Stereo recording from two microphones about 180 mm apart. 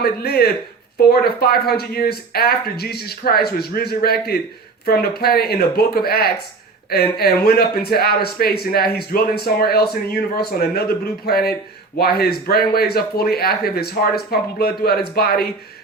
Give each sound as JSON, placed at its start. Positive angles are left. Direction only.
{"t": 0.0, "sound": "a man's voice", "side_deg": 60}